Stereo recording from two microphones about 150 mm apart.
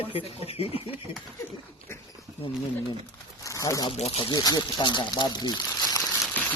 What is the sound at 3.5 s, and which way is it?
Speech, 20° left (ahead or behind).